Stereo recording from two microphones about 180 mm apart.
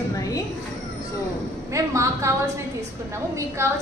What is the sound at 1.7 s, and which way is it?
Speech, 15° right (ahead or behind).